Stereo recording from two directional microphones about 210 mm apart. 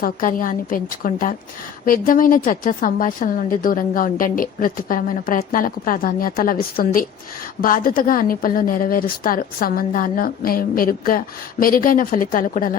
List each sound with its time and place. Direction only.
0.0 s a woman's voice: 40° left (ahead or behind)